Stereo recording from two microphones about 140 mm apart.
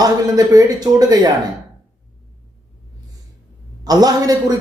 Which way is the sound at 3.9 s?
25° right (ahead or behind).